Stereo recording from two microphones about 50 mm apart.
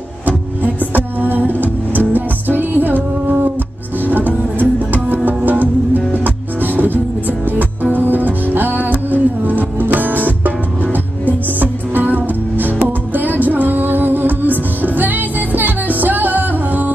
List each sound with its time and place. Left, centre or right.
0.6 s music: right